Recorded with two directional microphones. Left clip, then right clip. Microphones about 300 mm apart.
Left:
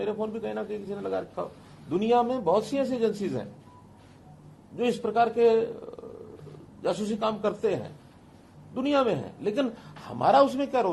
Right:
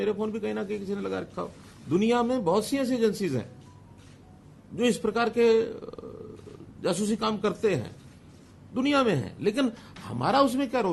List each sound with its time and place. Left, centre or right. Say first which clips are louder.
0.0 s a man's voice: right 2 dB; right
4.8 s a man's voice: left 1 dB; right
6.8 s a man's voice: even; right